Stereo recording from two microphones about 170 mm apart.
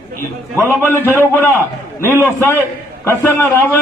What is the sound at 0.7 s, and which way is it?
Speech, 10° left (ahead or behind).